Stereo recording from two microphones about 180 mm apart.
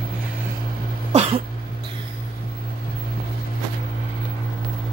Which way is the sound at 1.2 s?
30° right (ahead or behind).